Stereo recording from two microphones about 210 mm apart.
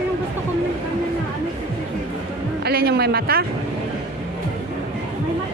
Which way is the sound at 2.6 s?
50° right (ahead or behind).